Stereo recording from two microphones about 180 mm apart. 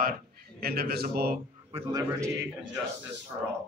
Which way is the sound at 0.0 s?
55° right (ahead or behind).